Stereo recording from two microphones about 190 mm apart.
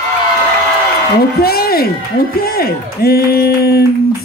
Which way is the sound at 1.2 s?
55° left (ahead or behind).